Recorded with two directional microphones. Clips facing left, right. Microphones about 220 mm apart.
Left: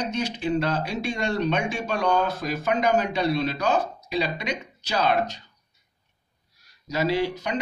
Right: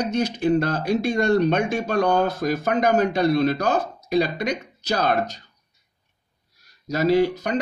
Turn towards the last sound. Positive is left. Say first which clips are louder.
# right 6 dB
turn(degrees=-45)  # may be behind; listen again after turning